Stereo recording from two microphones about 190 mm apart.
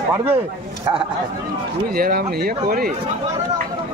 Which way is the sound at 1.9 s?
50° right (ahead or behind).